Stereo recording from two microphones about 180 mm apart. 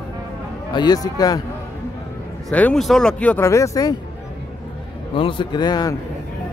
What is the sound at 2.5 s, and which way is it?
Speech, 5° left (ahead or behind).